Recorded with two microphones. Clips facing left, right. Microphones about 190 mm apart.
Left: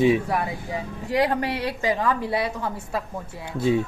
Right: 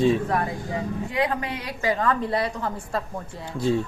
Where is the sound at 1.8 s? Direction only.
15° left (ahead or behind).